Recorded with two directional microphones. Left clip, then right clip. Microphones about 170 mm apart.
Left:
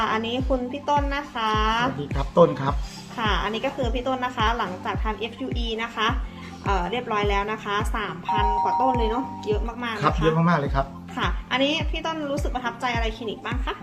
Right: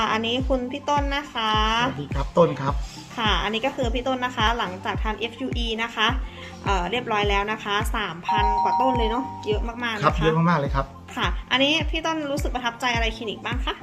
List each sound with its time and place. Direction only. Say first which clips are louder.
0.0 s speech: right 1 dB; 35° right (ahead or behind)
2.1 s speech: left 2 dB; 5° right (ahead or behind)
3.2 s speech: right 2 dB; 35° right (ahead or behind)
10.3 s speech: even; 10° right (ahead or behind)
11.1 s speech: right 4 dB; 40° right (ahead or behind)